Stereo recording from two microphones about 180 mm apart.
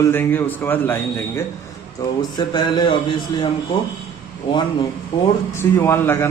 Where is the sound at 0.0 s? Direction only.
15° left (ahead or behind).